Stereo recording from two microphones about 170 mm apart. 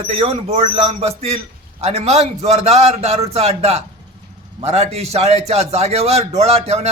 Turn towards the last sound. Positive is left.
turn(degrees=-40)  # may be behind; listen again after turning